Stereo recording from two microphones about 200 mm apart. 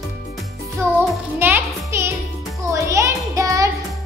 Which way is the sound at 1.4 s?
10° right (ahead or behind).